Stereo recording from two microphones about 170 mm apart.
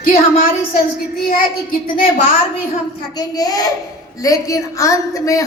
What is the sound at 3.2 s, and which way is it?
A woman's voice, 20° left (ahead or behind).